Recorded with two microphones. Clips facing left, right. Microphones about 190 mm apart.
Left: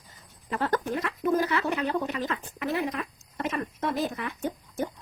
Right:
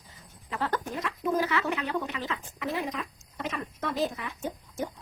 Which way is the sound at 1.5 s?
40° left (ahead or behind).